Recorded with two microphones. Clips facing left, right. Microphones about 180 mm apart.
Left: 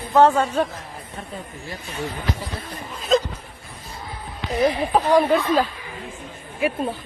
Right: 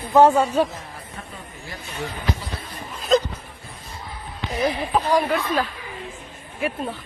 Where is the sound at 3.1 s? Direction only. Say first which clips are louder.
Even; centre (ahead or behind).